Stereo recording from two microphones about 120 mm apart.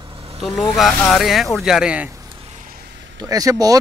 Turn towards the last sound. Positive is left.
turn(degrees=-30)  # may be behind; listen again after turning